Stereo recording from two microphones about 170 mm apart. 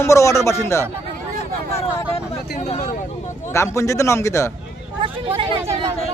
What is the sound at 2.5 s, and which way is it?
Speech, 40° left (ahead or behind).